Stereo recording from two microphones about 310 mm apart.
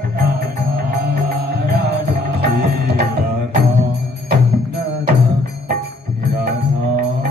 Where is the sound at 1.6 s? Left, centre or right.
Right.